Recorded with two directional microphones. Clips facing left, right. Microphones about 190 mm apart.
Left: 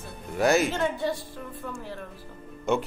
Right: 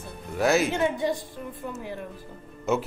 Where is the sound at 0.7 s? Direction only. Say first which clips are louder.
Right 2 dB; 15° right (ahead or behind).